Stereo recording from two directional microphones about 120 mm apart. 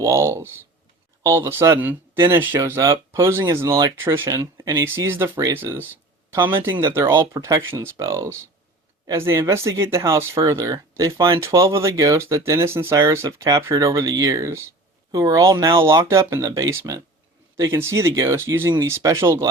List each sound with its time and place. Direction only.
0.0 s speech: 25° right (ahead or behind)
7.1 s speech: 25° right (ahead or behind)